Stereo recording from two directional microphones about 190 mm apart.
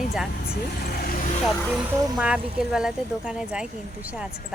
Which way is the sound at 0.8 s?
50° left (ahead or behind).